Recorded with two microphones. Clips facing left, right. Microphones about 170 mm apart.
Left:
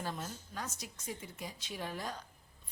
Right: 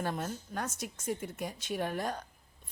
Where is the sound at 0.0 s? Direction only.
55° right (ahead or behind).